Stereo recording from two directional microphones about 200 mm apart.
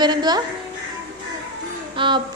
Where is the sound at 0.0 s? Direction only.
20° right (ahead or behind).